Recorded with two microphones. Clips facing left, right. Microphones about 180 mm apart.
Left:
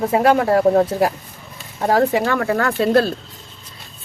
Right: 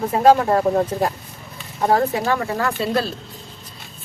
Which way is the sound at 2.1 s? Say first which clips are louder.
Left 3 dB; 85° left.